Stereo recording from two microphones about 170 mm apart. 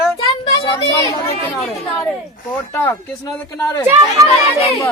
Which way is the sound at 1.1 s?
15° left (ahead or behind).